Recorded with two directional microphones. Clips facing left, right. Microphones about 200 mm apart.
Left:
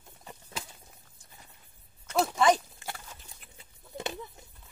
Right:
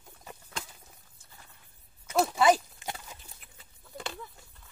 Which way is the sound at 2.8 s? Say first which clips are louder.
Right 2 dB; 20° right (ahead or behind).